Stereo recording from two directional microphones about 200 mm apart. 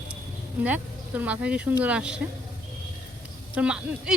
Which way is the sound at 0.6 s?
10° right (ahead or behind).